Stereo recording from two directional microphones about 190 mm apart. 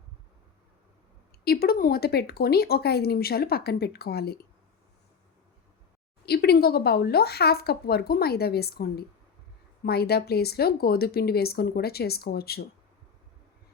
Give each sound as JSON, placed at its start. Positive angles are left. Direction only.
{"t": 1.5, "sound": "speech", "side_deg": 55}
{"t": 6.2, "sound": "speech", "side_deg": 55}